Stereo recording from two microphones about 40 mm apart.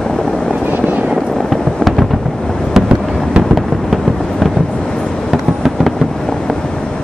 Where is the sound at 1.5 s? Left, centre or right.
Centre.